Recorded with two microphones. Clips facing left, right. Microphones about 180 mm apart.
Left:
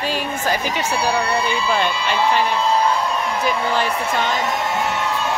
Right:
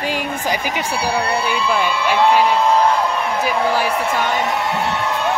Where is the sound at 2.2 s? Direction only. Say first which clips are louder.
Right 5 dB; 65° right (ahead or behind).